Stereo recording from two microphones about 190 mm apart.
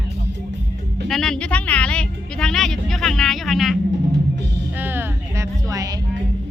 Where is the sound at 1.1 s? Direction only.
Centre (ahead or behind); by 6.0 s 20° right (ahead or behind).